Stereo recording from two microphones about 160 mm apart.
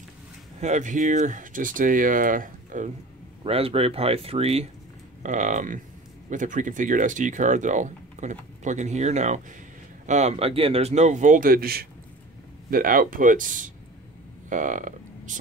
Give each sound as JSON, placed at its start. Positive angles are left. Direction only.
{"t": 0.6, "sound": "speech", "side_deg": -50}
{"t": 3.4, "sound": "speech", "side_deg": -35}
{"t": 5.2, "sound": "speech", "side_deg": -50}
{"t": 12.7, "sound": "speech", "side_deg": -60}